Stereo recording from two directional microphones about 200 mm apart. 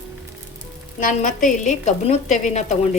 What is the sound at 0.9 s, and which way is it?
A woman's voice, 40° left (ahead or behind).